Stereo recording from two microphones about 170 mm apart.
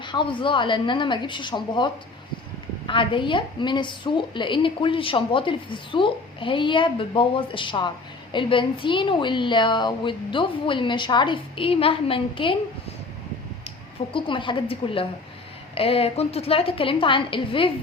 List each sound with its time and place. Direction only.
0.0 s a woman's voice: 30° left (ahead or behind)
14.1 s a woman's voice: 30° left (ahead or behind)